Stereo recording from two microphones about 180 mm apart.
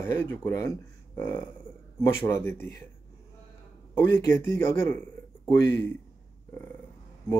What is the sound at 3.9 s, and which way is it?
Speech, 15° left (ahead or behind).